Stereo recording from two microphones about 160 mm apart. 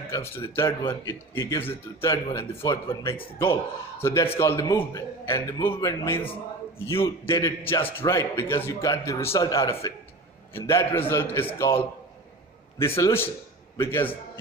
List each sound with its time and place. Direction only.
0.1 s a man's voice: 15° left (ahead or behind)